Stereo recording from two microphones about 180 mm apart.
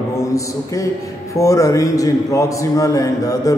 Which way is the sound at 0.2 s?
15° left (ahead or behind).